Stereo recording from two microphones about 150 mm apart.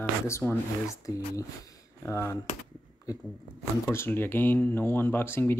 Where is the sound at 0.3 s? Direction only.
20° left (ahead or behind).